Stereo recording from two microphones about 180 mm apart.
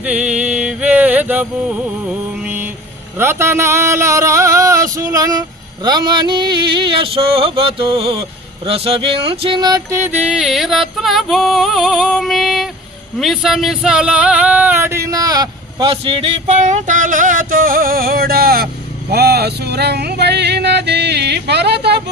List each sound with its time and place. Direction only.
0.0 s a sound: 5° right (ahead or behind)
13.1 s speech: centre (ahead or behind); by 16.3 s 30° right (ahead or behind)
16.5 s music: 40° right (ahead or behind); by 22.0 s 65° right (ahead or behind)